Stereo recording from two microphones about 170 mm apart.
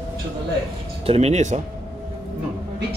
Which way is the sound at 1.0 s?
40° right (ahead or behind).